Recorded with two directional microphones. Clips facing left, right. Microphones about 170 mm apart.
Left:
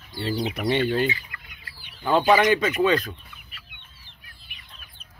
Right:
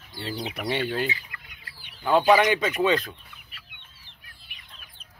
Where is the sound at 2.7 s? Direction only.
25° right (ahead or behind).